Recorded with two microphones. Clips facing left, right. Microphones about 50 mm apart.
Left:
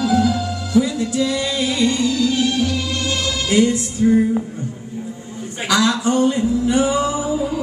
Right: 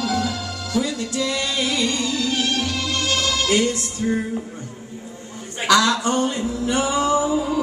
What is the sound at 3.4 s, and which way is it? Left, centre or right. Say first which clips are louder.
Music: left 5 dB; centre.